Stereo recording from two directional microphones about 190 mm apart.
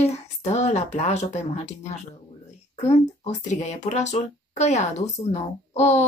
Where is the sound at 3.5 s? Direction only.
40° left (ahead or behind).